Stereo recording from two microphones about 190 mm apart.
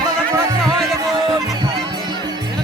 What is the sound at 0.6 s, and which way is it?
Music, centre (ahead or behind).